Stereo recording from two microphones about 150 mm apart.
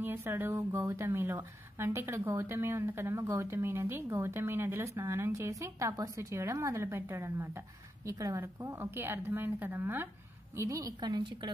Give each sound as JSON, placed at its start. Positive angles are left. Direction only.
{"t": 0.0, "sound": "a woman's voice", "side_deg": -15}